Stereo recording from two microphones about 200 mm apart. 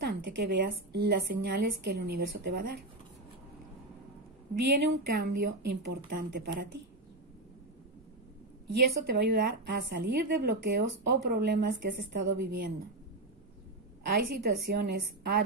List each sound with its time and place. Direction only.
0.2 s a woman's voice: 60° right (ahead or behind)
4.6 s a woman's voice: 50° right (ahead or behind)
8.7 s a woman's voice: 50° right (ahead or behind)
14.0 s a woman's voice: 50° right (ahead or behind)